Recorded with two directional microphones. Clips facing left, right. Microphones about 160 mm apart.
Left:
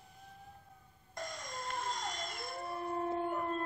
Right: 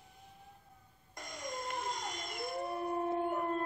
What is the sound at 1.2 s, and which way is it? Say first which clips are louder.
Dog: right 1 dB; 15° right (ahead or behind).